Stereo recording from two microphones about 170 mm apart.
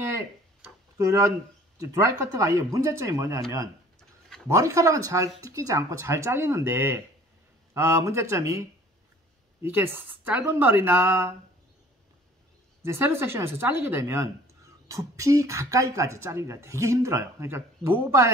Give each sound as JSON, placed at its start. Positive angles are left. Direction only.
{"t": 0.9, "sound": "speech", "side_deg": -15}
{"t": 12.8, "sound": "speech", "side_deg": -15}